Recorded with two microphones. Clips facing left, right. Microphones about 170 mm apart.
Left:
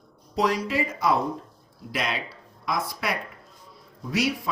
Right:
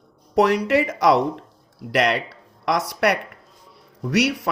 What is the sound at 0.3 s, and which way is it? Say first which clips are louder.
A man's voice: right 7 dB; 65° right (ahead or behind).